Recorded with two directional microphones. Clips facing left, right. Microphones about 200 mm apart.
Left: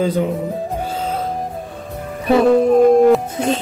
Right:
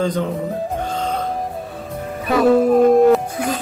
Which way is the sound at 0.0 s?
10° left (ahead or behind).